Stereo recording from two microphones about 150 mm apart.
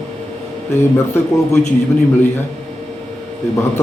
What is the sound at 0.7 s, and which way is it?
Speech, 15° left (ahead or behind).